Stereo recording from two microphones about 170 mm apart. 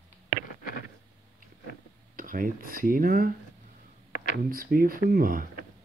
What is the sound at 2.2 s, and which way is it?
Speech, 55° right (ahead or behind).